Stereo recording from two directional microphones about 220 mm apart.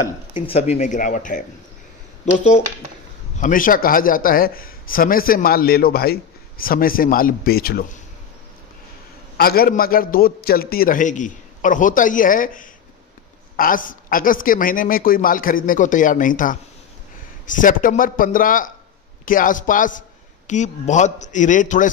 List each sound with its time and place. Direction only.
0.3 s a man's voice: 30° left (ahead or behind)
9.4 s a man's voice: 45° left (ahead or behind)